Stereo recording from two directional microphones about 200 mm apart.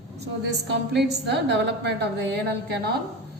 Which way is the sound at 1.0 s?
60° right (ahead or behind).